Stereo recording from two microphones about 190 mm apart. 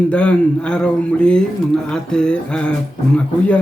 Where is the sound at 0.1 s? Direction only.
5° left (ahead or behind).